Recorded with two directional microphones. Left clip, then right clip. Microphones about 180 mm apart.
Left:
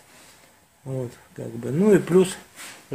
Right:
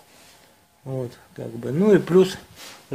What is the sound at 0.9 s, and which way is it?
Speech, centre (ahead or behind).